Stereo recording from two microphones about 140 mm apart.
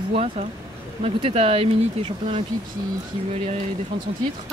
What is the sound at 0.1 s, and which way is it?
Speech, 50° right (ahead or behind).